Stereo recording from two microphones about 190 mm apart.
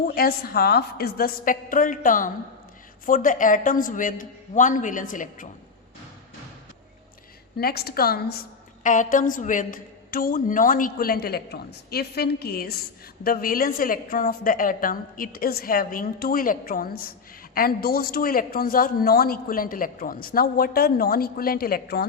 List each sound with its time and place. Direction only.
0.1 s a man's voice: 50° left (ahead or behind)
7.5 s a woman's voice: 55° left (ahead or behind)
8.8 s a man's voice: 40° left (ahead or behind)